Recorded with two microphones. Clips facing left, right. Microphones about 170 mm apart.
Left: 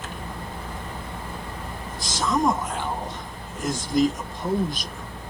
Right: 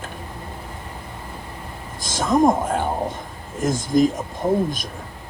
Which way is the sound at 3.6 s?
50° right (ahead or behind).